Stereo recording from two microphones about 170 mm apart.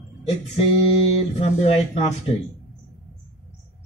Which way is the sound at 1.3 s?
40° left (ahead or behind).